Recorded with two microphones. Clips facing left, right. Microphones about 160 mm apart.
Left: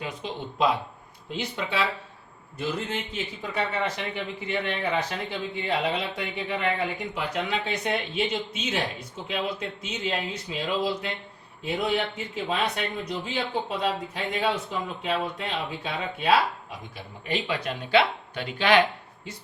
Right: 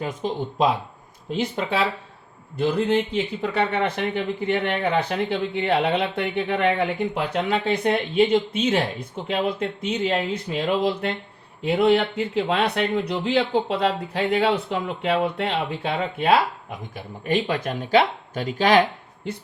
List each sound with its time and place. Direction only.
0.0 s speech: 45° right (ahead or behind)
2.6 s speech: 60° right (ahead or behind); by 18.8 s 40° right (ahead or behind)